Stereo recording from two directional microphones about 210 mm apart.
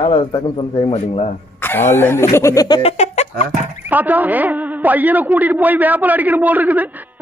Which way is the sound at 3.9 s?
10° right (ahead or behind).